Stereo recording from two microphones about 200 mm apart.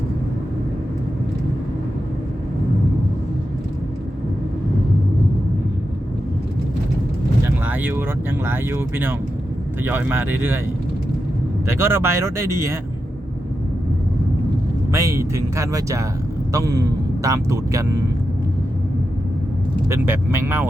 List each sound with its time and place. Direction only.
7.6 s a sound: 10° right (ahead or behind)
8.4 s speech: 10° right (ahead or behind)
11.6 s speech: 10° right (ahead or behind)
14.9 s speech: 15° right (ahead or behind)
19.9 s speech: 10° right (ahead or behind)